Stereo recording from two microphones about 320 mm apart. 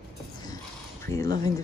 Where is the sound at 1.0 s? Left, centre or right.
Centre.